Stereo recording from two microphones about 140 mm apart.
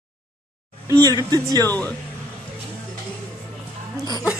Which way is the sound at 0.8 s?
25° right (ahead or behind).